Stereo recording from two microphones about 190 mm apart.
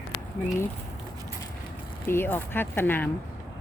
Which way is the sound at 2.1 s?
10° left (ahead or behind).